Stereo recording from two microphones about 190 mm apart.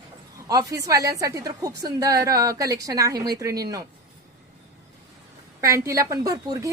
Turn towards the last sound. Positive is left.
turn(degrees=-20)  # may be behind; listen again after turning